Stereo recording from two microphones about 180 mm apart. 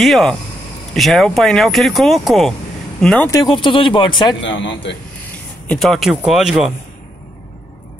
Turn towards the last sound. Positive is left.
turn(degrees=-5)  # may be behind; listen again after turning